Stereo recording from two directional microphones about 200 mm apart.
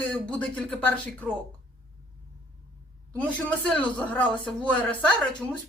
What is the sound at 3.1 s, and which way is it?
A woman's voice, 5° left (ahead or behind).